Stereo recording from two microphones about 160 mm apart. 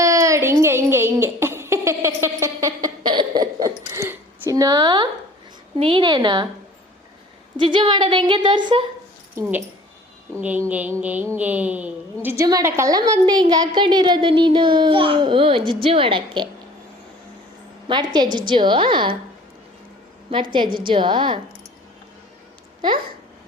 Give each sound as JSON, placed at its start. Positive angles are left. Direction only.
{"t": 0.0, "sound": "a sound", "side_deg": -20}
{"t": 5.8, "sound": "a woman's voice", "side_deg": -30}
{"t": 7.5, "sound": "a woman's voice", "side_deg": -30}
{"t": 9.3, "sound": "speech", "side_deg": -10}
{"t": 10.3, "sound": "a sound", "side_deg": -15}
{"t": 12.5, "sound": "a woman's voice", "side_deg": -20}
{"t": 17.8, "sound": "a woman's voice", "side_deg": -30}
{"t": 20.7, "sound": "a woman's voice", "side_deg": -30}